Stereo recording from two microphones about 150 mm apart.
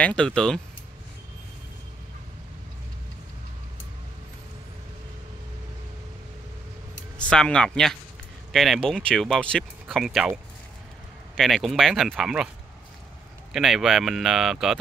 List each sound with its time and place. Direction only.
0.0 s speech: 5° left (ahead or behind)
7.2 s speech: 5° left (ahead or behind)
13.5 s speech: centre (ahead or behind)